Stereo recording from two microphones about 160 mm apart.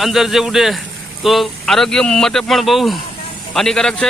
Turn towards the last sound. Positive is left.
turn(degrees=5)  # may be behind; listen again after turning